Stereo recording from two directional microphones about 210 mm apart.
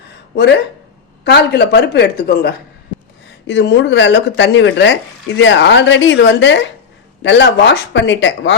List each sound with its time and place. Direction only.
1.2 s a woman's voice: 50° left (ahead or behind)